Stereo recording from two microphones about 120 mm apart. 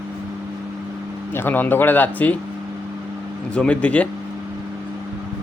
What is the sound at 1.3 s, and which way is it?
Speech, 15° left (ahead or behind).